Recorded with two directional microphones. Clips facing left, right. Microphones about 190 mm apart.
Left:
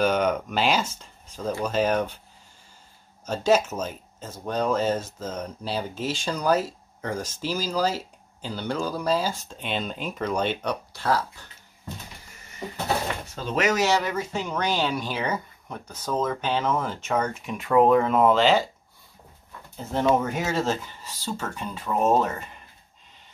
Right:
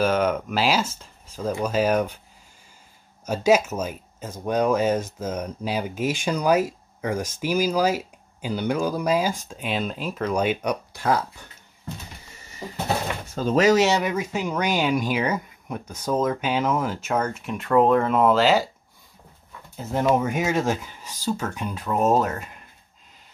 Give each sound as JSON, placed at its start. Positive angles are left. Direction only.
{"t": 0.0, "sound": "speech", "side_deg": -5}
{"t": 3.3, "sound": "speech", "side_deg": -10}
{"t": 13.3, "sound": "speech", "side_deg": -45}
{"t": 13.8, "sound": "speech", "side_deg": -20}
{"t": 19.8, "sound": "speech", "side_deg": -5}